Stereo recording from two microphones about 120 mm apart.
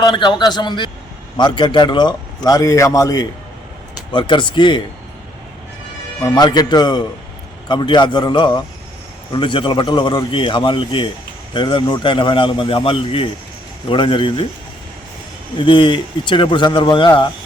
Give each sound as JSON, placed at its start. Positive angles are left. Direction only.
{"t": 0.0, "sound": "a man's voice", "side_deg": 35}
{"t": 4.1, "sound": "a man's voice", "side_deg": 45}
{"t": 6.2, "sound": "a man's voice", "side_deg": 35}
{"t": 15.5, "sound": "a man's voice", "side_deg": 45}